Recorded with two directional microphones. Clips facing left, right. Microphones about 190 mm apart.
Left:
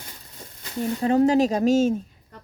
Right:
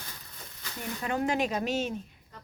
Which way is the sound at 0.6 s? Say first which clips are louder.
Left 11 dB; 30° left (ahead or behind).